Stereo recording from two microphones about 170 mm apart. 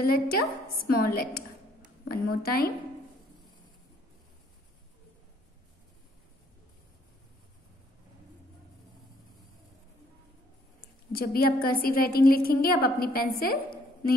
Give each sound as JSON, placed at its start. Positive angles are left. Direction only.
{"t": 0.0, "sound": "a woman's voice", "side_deg": 65}
{"t": 11.1, "sound": "a woman's voice", "side_deg": 60}